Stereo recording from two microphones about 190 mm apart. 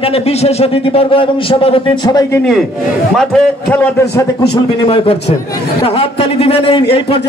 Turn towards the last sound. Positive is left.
turn(degrees=30)  # may be behind; listen again after turning